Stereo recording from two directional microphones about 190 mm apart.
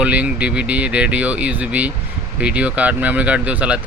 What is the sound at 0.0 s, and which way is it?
Speech, 5° right (ahead or behind).